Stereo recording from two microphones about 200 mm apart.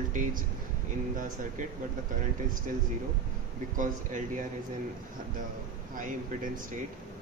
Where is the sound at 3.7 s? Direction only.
40° right (ahead or behind).